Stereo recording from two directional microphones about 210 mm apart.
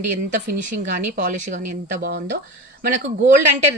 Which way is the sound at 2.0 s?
55° right (ahead or behind).